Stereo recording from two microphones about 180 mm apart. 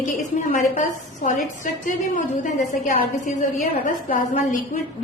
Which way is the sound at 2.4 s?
40° left (ahead or behind).